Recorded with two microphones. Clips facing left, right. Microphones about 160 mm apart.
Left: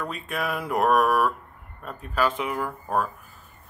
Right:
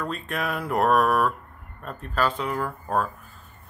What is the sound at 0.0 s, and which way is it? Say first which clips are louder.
Speech: right 1 dB; 5° left (ahead or behind).